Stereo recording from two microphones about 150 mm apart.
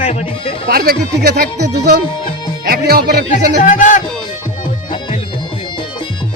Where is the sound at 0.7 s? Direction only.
85° right.